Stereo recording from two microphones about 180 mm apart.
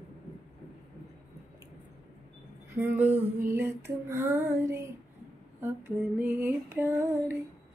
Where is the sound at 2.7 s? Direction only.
10° right (ahead or behind).